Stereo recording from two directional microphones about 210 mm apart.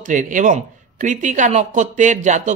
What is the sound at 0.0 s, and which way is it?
A man's voice, 40° right (ahead or behind).